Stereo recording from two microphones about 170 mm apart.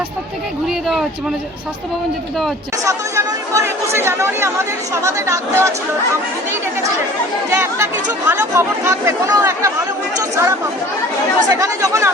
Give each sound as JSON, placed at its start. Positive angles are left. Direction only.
{"t": 2.8, "sound": "speech", "side_deg": -20}
{"t": 7.5, "sound": "speech", "side_deg": -15}